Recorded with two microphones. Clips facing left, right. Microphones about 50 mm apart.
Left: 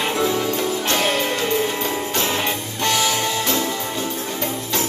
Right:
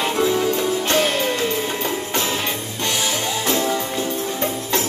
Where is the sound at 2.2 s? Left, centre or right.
Centre.